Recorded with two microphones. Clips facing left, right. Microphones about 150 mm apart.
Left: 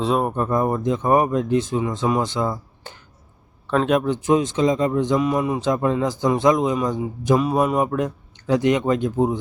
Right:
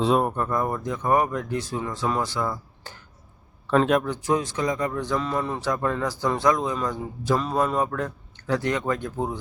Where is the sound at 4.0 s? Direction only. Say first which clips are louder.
Left 6 dB; 20° left (ahead or behind).